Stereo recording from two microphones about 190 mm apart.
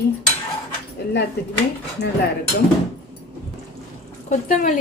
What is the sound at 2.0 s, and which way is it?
Speech, 60° left (ahead or behind).